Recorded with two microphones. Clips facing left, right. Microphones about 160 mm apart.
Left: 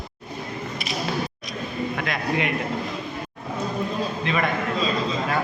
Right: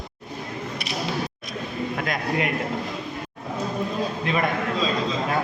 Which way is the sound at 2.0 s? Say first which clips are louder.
Right 1 dB; 45° right (ahead or behind).